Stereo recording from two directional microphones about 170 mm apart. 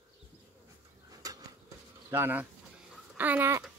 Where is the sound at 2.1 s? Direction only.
10° right (ahead or behind).